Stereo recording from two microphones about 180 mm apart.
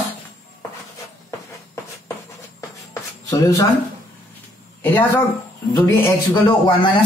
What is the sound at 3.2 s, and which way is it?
Speech, 20° left (ahead or behind).